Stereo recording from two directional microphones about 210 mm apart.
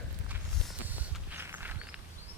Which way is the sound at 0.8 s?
10° right (ahead or behind).